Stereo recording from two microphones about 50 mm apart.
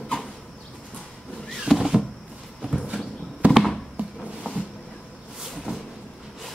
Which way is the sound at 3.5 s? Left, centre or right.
Centre.